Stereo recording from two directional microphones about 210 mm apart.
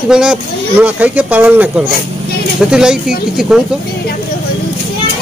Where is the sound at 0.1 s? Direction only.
5° right (ahead or behind).